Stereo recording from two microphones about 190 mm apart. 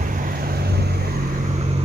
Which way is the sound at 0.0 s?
55° right (ahead or behind).